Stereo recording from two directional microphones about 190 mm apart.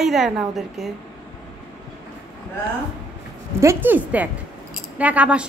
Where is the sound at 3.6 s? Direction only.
10° right (ahead or behind).